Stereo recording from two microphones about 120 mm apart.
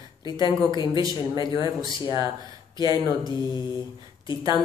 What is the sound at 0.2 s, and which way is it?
Speech, 40° left (ahead or behind).